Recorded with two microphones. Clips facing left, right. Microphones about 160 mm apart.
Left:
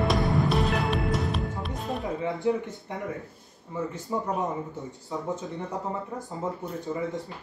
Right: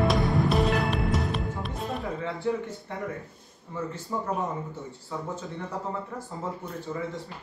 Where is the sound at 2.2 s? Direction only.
20° left (ahead or behind).